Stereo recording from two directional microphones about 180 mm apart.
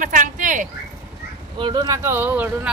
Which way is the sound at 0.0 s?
45° right (ahead or behind).